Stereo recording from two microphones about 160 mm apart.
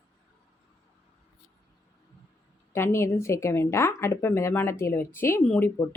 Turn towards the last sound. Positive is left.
turn(degrees=15)  # may be behind; listen again after turning